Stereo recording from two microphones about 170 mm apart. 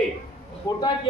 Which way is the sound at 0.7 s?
20° left (ahead or behind).